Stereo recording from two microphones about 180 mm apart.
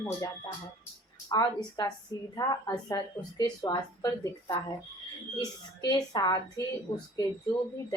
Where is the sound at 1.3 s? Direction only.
20° left (ahead or behind).